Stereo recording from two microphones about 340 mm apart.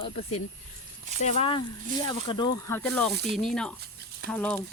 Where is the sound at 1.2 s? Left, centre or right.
Centre.